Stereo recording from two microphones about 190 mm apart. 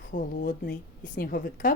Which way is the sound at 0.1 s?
50° left (ahead or behind).